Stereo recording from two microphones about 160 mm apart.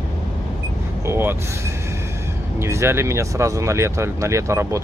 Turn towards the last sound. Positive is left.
turn(degrees=-20)  # may be behind; listen again after turning